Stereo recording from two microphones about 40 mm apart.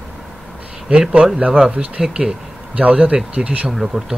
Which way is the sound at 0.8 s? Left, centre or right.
Right.